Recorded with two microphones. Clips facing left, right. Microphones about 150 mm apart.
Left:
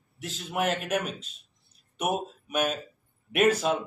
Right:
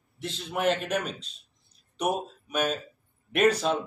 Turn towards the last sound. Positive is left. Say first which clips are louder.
# even
turn(degrees=5)  # may be behind; listen again after turning